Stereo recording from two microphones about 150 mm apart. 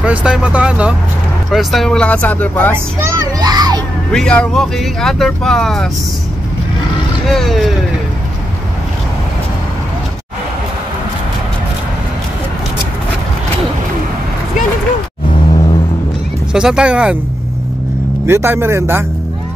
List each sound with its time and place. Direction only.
0.0 s speech: 5° right (ahead or behind); by 2.7 s 10° left (ahead or behind)
2.7 s a child's voice: 20° right (ahead or behind)
4.1 s speech: 5° left (ahead or behind)
7.2 s speech: centre (ahead or behind)
16.5 s speech: 5° right (ahead or behind)
18.2 s speech: 15° right (ahead or behind)